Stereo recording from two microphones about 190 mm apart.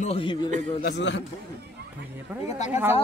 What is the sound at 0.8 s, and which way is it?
Speech, 65° left (ahead or behind).